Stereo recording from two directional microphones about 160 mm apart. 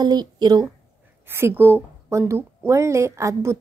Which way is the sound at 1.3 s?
15° right (ahead or behind).